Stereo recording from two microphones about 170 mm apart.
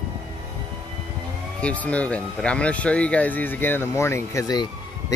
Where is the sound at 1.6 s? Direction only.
10° left (ahead or behind).